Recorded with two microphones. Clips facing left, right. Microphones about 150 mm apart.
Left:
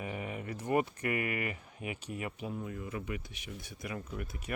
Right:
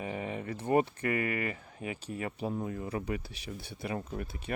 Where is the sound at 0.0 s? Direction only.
30° right (ahead or behind).